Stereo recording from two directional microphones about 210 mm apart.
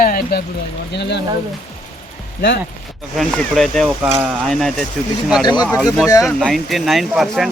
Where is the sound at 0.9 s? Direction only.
55° left (ahead or behind).